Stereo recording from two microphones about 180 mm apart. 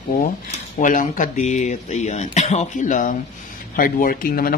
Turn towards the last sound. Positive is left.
turn(degrees=55)  # may be behind; listen again after turning